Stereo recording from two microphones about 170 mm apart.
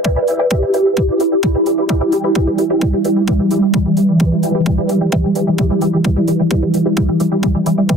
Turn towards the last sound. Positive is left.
turn(degrees=0)  # may be behind; listen again after turning